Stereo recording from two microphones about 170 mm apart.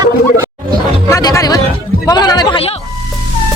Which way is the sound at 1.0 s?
20° left (ahead or behind).